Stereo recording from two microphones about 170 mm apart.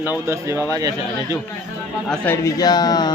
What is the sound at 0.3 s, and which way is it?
Speech, 15° right (ahead or behind).